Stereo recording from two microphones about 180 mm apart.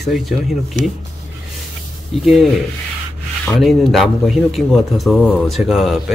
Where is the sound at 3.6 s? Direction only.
Centre (ahead or behind).